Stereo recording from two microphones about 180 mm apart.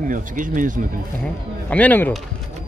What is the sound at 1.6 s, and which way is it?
Speech, 10° left (ahead or behind).